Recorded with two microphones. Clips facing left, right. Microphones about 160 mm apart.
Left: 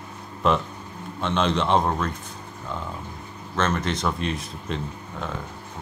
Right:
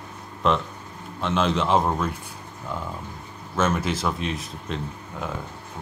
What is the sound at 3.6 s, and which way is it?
Speech, 5° right (ahead or behind).